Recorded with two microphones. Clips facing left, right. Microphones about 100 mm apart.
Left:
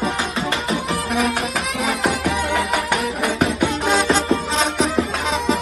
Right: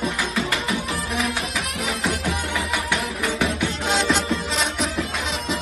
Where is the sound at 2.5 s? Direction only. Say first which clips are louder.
Left 5 dB; 75° left (ahead or behind); by 4.2 s 50° left (ahead or behind).